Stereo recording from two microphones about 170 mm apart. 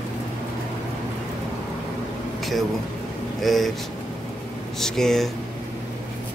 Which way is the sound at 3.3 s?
Centre (ahead or behind).